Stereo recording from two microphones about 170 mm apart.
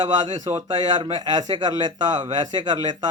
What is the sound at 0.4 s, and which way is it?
A man's voice, 25° right (ahead or behind).